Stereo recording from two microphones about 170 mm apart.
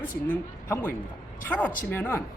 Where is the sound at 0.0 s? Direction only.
10° left (ahead or behind).